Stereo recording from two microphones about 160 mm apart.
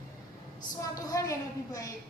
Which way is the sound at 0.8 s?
20° left (ahead or behind).